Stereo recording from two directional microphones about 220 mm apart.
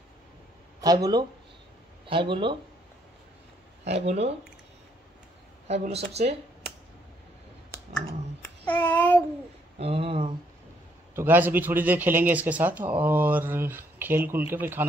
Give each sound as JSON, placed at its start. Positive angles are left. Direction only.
{"t": 0.7, "sound": "speech", "side_deg": -15}
{"t": 3.8, "sound": "speech", "side_deg": -30}
{"t": 5.7, "sound": "speech", "side_deg": -30}
{"t": 8.6, "sound": "child singing", "side_deg": 5}
{"t": 9.8, "sound": "speech", "side_deg": -25}
{"t": 11.1, "sound": "speech", "side_deg": -10}